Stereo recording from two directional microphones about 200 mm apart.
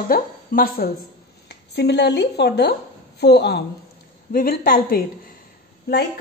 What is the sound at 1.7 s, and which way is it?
A woman's voice, 55° left (ahead or behind).